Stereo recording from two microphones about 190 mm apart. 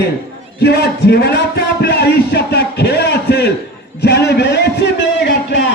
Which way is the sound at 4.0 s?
60° left (ahead or behind).